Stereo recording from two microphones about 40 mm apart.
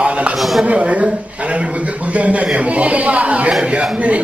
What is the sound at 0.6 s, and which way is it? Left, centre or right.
Speech, right.